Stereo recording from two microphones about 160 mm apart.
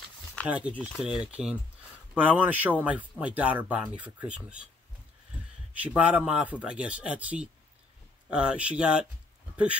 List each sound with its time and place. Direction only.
0.5 s speech: 5° right (ahead or behind)
5.8 s speech: 10° right (ahead or behind)